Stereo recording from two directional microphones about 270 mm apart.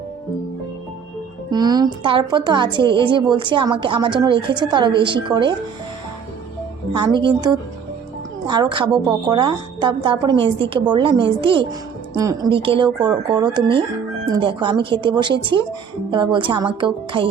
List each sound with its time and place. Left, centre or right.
1.5 s a woman's voice: centre
6.9 s a woman's voice: centre